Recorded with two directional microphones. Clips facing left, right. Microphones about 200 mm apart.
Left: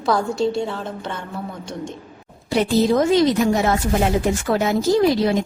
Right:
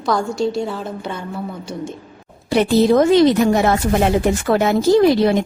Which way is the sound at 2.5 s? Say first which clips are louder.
Right 4 dB; 65° right (ahead or behind).